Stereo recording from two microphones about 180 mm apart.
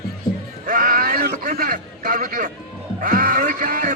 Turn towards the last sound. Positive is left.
turn(degrees=-50)  # may be behind; listen again after turning